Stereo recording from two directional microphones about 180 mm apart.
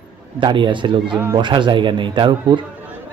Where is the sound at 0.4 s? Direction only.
25° right (ahead or behind).